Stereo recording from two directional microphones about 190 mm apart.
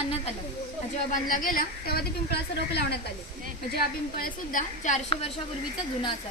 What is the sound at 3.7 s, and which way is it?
A woman's voice, 45° left (ahead or behind).